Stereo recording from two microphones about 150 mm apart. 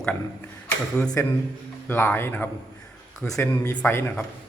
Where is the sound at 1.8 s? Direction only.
15° left (ahead or behind).